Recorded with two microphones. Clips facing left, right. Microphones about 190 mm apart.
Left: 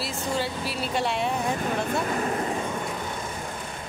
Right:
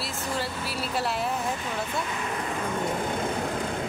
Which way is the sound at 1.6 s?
50° left (ahead or behind).